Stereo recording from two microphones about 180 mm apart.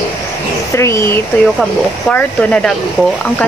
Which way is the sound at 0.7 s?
15° left (ahead or behind).